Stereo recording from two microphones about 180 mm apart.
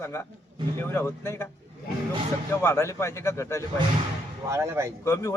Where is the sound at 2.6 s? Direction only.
15° left (ahead or behind).